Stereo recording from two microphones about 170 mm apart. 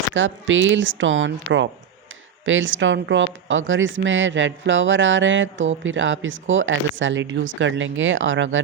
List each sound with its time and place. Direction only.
0.1 s speech: 90° right